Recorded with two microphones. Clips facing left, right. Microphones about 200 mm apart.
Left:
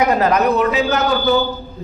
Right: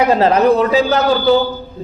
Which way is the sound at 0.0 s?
30° right (ahead or behind).